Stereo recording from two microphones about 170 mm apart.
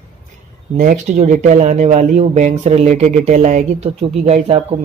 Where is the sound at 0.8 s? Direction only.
50° right (ahead or behind).